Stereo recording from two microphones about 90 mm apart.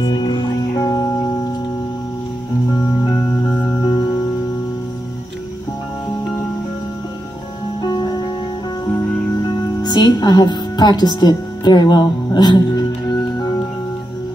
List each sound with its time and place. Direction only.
0.0 s music: 50° left (ahead or behind)
3.1 s music: 50° left (ahead or behind)
7.8 s music: 50° left (ahead or behind)
9.5 s speech: 50° left (ahead or behind)